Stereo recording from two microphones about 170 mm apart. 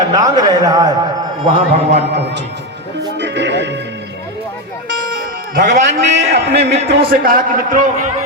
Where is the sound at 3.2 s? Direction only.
90° right.